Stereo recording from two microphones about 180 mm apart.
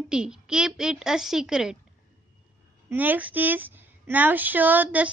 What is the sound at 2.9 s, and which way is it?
Speech, 10° right (ahead or behind).